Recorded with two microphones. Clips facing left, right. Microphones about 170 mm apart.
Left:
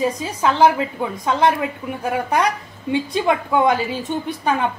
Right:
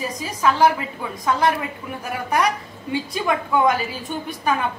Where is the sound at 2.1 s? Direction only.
25° left (ahead or behind).